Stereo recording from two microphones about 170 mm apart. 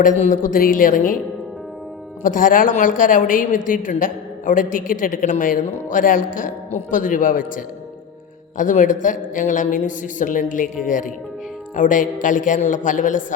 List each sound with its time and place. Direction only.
0.0 s a woman's voice: 50° left (ahead or behind)
2.2 s a woman's voice: 55° left (ahead or behind)